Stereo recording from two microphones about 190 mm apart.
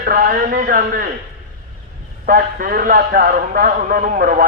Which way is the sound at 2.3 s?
45° right (ahead or behind).